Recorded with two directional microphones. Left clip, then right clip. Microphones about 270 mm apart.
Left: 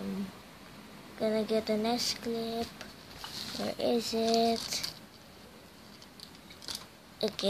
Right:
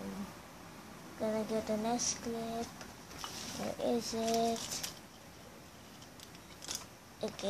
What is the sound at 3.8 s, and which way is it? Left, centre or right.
Speech, left.